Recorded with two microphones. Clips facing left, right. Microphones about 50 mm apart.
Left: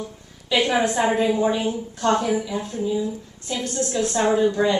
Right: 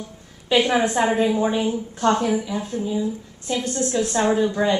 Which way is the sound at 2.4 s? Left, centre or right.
Centre.